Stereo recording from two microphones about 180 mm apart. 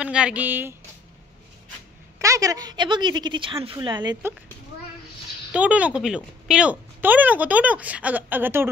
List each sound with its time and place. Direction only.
0.0 s a woman's voice: 5° right (ahead or behind)
2.1 s a woman's voice: 15° right (ahead or behind)
5.5 s a woman's voice: 10° right (ahead or behind)